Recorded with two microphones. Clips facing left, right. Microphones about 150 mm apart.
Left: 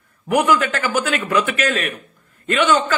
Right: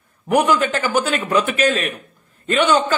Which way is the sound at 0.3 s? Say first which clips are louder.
Right 1 dB; 30° right (ahead or behind).